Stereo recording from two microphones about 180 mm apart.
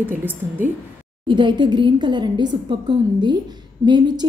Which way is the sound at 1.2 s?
25° right (ahead or behind).